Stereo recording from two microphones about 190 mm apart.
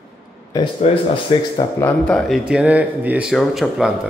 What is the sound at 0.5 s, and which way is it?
Speech, 30° left (ahead or behind).